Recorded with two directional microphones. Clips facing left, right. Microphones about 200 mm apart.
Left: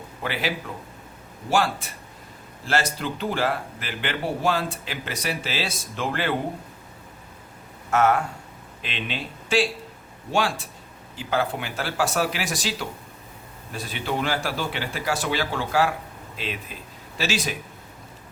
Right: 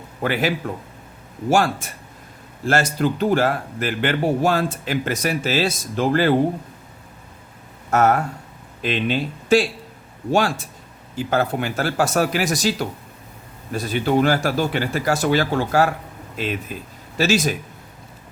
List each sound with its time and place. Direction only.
0.2 s speech: 50° right (ahead or behind)
7.9 s speech: 40° right (ahead or behind)
11.2 s speech: 45° right (ahead or behind)